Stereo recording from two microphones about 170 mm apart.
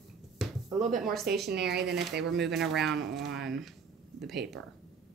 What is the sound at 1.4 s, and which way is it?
Speech, 80° right.